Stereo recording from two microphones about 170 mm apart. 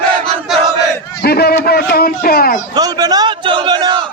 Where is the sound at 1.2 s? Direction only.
70° left (ahead or behind).